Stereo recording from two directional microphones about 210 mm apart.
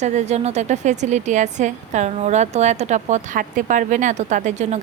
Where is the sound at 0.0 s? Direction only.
35° right (ahead or behind).